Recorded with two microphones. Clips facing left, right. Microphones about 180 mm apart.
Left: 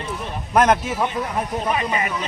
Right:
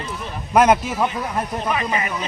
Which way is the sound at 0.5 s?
5° right (ahead or behind).